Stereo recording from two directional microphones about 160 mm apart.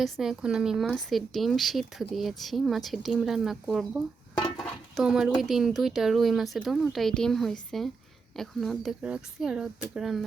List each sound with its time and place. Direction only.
0.0 s speech: 5° right (ahead or behind)